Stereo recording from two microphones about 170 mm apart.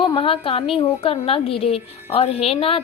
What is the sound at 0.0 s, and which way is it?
A woman's voice, 30° left (ahead or behind).